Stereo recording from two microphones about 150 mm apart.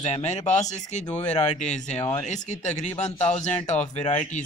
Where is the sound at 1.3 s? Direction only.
50° left (ahead or behind).